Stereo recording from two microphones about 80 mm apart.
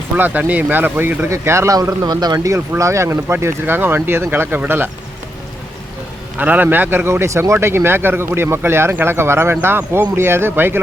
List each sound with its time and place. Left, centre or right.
0.2 s a man's voice: right
1.3 s speech: right
2.5 s a man's voice: right
6.3 s a man's voice: right